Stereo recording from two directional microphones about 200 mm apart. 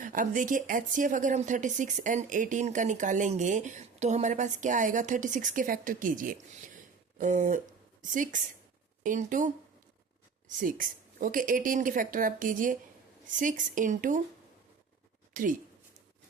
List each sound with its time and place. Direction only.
0.0 s speech: 40° right (ahead or behind)
10.6 s speech: 40° right (ahead or behind)
15.3 s speech: 40° right (ahead or behind)